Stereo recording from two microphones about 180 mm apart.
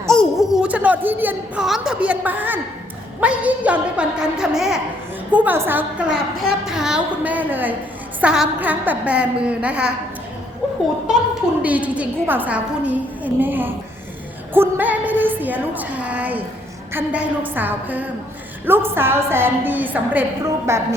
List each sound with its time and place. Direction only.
0.1 s a woman's voice: centre (ahead or behind)
11.6 s a woman's voice: 10° right (ahead or behind)